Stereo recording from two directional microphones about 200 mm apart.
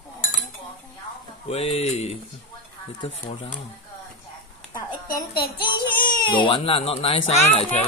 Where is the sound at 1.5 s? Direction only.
30° left (ahead or behind).